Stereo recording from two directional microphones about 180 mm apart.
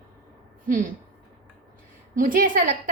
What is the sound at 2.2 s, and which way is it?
Speech, 50° right (ahead or behind).